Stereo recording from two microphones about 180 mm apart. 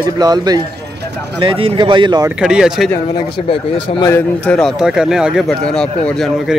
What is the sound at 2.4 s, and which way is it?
Speech, 5° right (ahead or behind).